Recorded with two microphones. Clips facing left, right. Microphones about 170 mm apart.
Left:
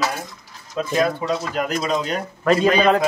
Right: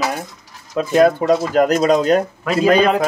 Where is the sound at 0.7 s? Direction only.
55° right (ahead or behind).